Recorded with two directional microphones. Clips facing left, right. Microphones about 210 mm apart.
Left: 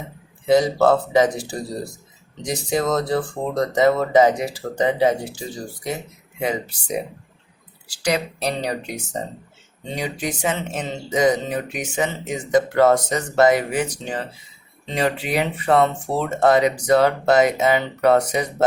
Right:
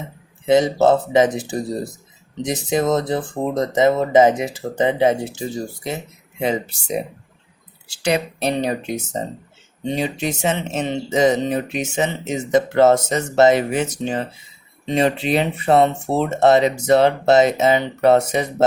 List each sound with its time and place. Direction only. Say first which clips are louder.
0.4 s speech: right 1 dB; 20° right (ahead or behind)